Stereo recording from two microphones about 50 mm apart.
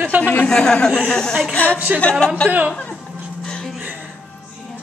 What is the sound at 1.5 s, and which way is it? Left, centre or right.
Speech, left.